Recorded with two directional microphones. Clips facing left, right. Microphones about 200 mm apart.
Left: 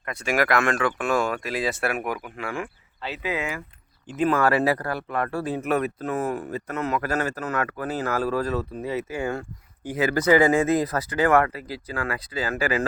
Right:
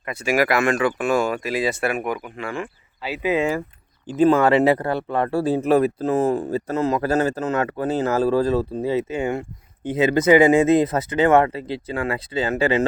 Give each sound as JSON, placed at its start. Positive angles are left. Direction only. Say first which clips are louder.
{"t": 0.0, "sound": "speech", "louder": "right 4 dB", "side_deg": -5}
{"t": 3.2, "sound": "speech", "louder": "right 9 dB", "side_deg": -25}